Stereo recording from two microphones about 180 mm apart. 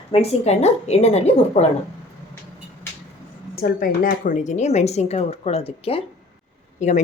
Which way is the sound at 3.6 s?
50° left (ahead or behind).